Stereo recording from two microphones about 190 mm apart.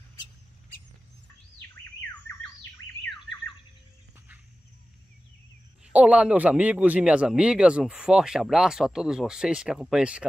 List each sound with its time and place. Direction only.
5.9 s speech: 5° right (ahead or behind)